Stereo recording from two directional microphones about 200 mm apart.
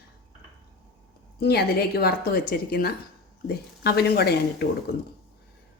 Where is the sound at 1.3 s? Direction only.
50° left (ahead or behind).